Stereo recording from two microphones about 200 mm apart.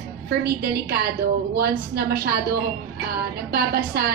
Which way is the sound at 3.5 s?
50° right (ahead or behind).